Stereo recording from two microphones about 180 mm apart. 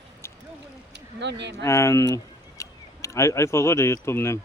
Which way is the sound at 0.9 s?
75° right (ahead or behind).